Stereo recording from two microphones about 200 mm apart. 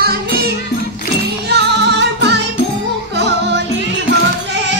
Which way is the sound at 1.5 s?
60° right (ahead or behind).